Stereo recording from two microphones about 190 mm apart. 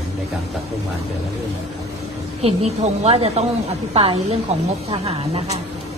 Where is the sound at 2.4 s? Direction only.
35° right (ahead or behind).